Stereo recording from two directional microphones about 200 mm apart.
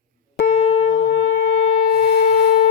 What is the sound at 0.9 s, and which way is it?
Shofar, 65° left (ahead or behind).